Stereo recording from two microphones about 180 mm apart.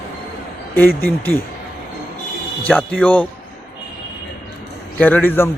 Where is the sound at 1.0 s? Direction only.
10° left (ahead or behind).